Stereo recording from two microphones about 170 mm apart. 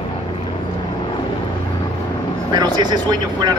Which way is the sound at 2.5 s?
25° right (ahead or behind).